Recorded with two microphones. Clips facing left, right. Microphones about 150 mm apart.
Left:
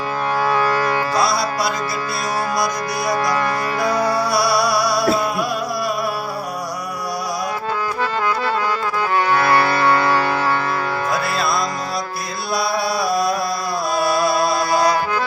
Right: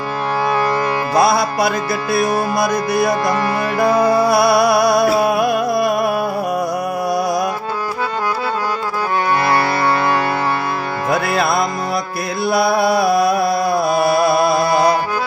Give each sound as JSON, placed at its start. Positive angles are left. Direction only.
{"t": 1.1, "sound": "music", "side_deg": -55}
{"t": 9.4, "sound": "music", "side_deg": -15}
{"t": 11.1, "sound": "music", "side_deg": -55}